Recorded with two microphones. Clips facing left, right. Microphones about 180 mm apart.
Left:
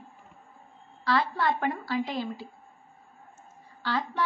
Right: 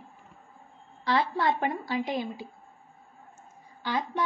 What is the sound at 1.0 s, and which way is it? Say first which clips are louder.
A woman's voice: even; 20° right (ahead or behind).